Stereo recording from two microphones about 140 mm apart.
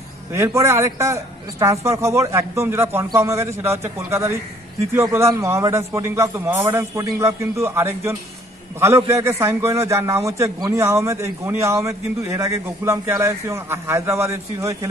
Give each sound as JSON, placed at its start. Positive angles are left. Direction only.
{"t": 0.3, "sound": "a man's voice", "side_deg": -20}